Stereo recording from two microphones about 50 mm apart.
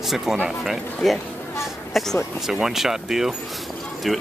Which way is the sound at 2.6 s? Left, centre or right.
Centre.